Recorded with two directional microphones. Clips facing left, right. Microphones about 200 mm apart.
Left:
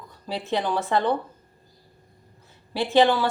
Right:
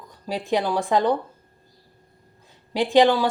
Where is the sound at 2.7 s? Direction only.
15° right (ahead or behind).